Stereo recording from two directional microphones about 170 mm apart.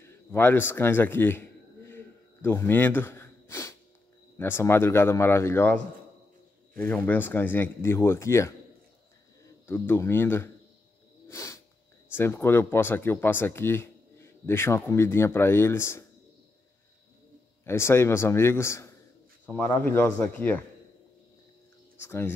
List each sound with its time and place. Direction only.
0.0 s speech: 10° left (ahead or behind)
1.9 s gasp: 15° left (ahead or behind)
4.4 s speech: 15° left (ahead or behind)
6.8 s speech: 10° left (ahead or behind)
9.7 s speech: 15° left (ahead or behind)
11.2 s snake: 20° left (ahead or behind)
12.1 s speech: 15° left (ahead or behind)
17.6 s speech: 15° left (ahead or behind)
22.0 s speech: 15° left (ahead or behind)